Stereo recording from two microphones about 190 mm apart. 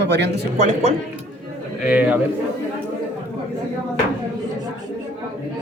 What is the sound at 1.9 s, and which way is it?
Speech, 10° right (ahead or behind).